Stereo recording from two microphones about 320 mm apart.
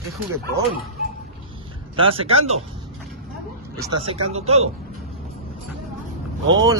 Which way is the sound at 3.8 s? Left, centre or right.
Centre.